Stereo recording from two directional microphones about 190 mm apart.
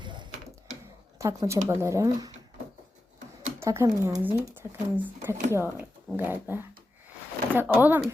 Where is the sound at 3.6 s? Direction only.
15° right (ahead or behind).